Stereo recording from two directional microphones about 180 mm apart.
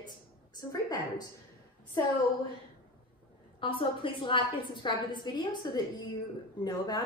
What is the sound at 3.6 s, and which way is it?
A woman's voice, 30° left (ahead or behind).